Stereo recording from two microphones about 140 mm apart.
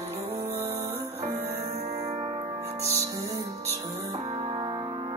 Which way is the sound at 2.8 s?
20° right (ahead or behind).